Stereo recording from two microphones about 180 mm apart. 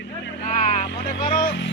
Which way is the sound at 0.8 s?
60° left (ahead or behind).